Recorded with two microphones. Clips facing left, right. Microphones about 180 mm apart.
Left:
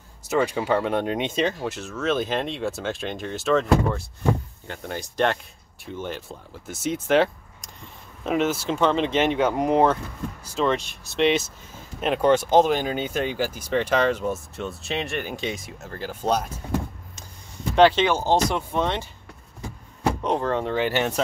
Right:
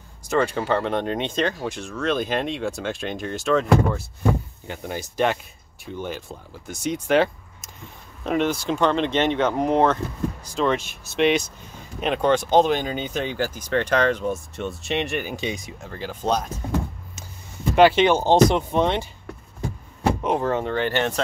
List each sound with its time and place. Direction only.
0.3 s speech: 5° left (ahead or behind)
17.7 s speech: 10° right (ahead or behind)
18.0 s speech: 20° right (ahead or behind)
20.2 s speech: 5° right (ahead or behind)